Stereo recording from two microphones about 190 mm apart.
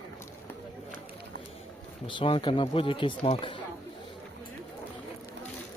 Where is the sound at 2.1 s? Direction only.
25° left (ahead or behind).